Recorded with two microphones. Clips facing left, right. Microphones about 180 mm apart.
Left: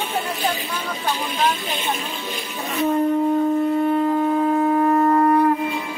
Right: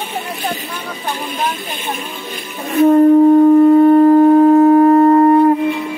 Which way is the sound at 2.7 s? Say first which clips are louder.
Right 11 dB; 55° right (ahead or behind).